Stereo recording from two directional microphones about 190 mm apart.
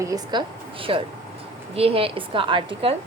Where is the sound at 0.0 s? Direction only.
20° right (ahead or behind).